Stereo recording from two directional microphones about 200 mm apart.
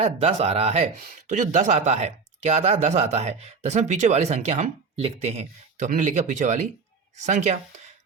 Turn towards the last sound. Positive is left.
turn(degrees=-35)  # may be behind; listen again after turning